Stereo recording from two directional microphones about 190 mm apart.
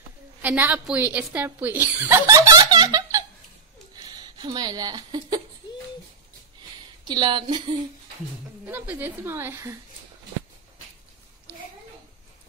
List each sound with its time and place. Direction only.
0.4 s speech: 10° right (ahead or behind)
3.9 s a sound: 20° right (ahead or behind)
7.1 s speech: 25° right (ahead or behind)
8.6 s speech: 10° right (ahead or behind)